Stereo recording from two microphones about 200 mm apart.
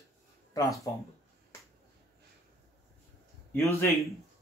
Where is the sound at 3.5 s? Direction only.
15° left (ahead or behind).